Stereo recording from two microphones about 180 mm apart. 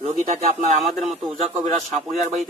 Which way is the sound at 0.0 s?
40° right (ahead or behind).